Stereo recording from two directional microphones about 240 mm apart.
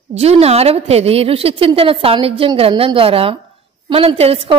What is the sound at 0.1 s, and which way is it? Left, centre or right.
A woman's voice, right.